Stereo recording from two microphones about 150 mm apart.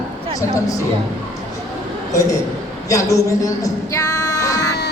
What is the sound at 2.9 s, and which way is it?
Child singing, 20° left (ahead or behind).